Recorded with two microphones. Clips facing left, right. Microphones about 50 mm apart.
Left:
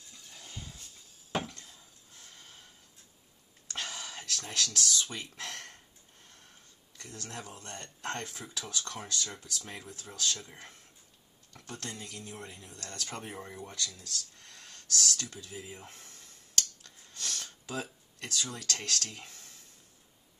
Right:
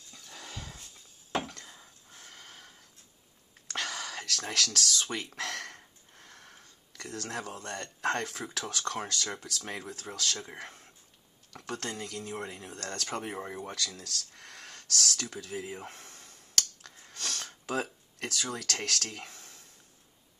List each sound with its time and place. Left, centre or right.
0.3 s dog: right
1.8 s a sound: right
2.3 s snort: right
3.6 s whispering: right
5.0 s speech: right
6.1 s a sound: right
8.5 s speech: right
10.3 s speech: right
11.5 s speech: right
13.1 s speech: right
13.7 s speech: right
15.9 s a sound: right
16.5 s finger snapping: right